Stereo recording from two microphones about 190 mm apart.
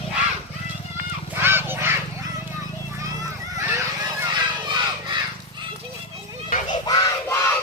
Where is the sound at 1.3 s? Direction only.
10° right (ahead or behind).